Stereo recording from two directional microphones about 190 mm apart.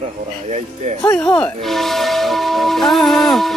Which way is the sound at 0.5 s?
40° right (ahead or behind).